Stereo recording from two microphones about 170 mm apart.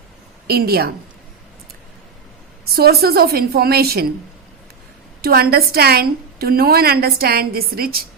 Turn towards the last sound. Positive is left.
turn(degrees=-60)  # may be behind; listen again after turning